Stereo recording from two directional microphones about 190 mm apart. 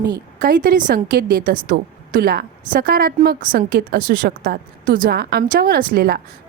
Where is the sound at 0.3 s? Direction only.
45° right (ahead or behind).